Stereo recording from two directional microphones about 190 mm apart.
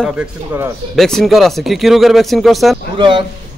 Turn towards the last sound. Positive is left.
turn(degrees=-25)  # may be behind; listen again after turning